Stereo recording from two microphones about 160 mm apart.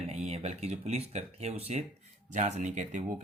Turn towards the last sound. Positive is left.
turn(degrees=-50)  # may be behind; listen again after turning